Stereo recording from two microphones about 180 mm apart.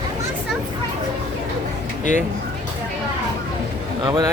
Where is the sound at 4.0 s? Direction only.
25° right (ahead or behind).